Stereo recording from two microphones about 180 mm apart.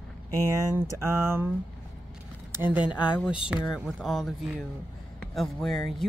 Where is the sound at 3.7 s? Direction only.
Centre (ahead or behind).